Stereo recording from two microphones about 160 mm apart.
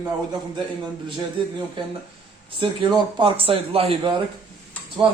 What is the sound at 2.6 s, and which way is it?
Speech, 30° right (ahead or behind).